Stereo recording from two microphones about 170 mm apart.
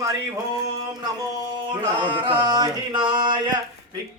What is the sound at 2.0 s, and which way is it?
Chant, 30° right (ahead or behind).